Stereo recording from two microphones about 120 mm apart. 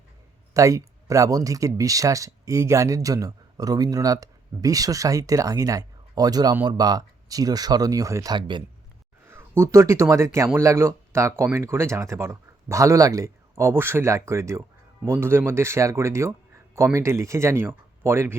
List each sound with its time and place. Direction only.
0.5 s speech: 25° right (ahead or behind)
9.3 s speech: 20° right (ahead or behind)